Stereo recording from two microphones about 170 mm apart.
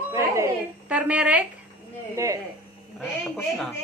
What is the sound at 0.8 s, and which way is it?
Speech, 10° right (ahead or behind).